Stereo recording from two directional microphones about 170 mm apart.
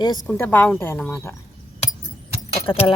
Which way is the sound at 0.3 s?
10° left (ahead or behind).